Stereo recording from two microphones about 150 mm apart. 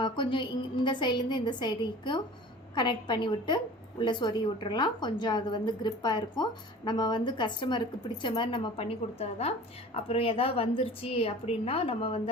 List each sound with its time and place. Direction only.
0.0 s a woman's voice: 30° left (ahead or behind)